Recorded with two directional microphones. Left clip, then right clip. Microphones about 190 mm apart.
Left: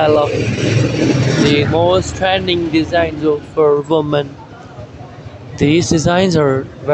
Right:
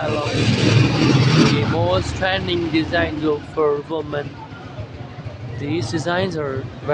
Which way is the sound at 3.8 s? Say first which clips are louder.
Left 10 dB; 30° left (ahead or behind).